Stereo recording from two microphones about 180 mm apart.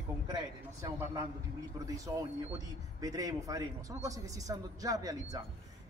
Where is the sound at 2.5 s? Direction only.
20° right (ahead or behind).